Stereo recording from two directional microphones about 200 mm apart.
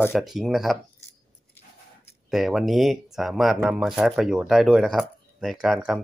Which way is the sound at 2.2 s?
Centre (ahead or behind).